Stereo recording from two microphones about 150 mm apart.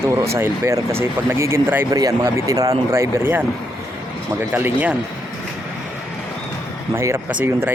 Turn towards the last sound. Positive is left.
turn(degrees=-15)  # may be behind; listen again after turning